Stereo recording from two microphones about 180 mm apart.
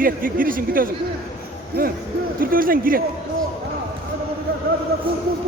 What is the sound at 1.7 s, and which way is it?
Speech, 65° right (ahead or behind).